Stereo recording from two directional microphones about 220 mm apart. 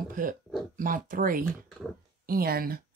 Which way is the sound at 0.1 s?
35° right (ahead or behind).